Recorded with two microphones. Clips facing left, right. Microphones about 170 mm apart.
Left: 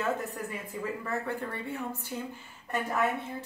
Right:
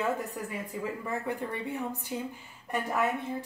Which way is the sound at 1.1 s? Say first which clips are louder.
Right 2 dB; 15° right (ahead or behind).